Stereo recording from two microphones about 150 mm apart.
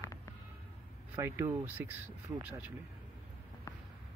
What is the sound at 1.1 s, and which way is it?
Speech, 15° right (ahead or behind).